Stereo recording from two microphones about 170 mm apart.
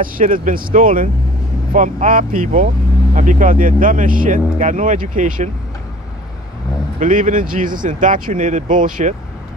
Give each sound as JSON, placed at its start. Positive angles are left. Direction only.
{"t": 0.0, "sound": "speech", "side_deg": -55}
{"t": 7.0, "sound": "speech", "side_deg": -50}